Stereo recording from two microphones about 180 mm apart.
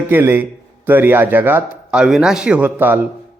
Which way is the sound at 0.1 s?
10° right (ahead or behind).